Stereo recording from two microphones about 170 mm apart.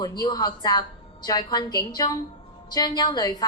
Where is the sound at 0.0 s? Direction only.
25° left (ahead or behind).